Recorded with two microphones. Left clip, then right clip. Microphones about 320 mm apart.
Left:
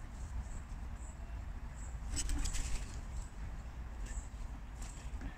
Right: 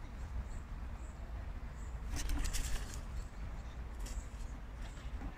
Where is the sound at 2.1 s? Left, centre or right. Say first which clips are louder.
Even; centre.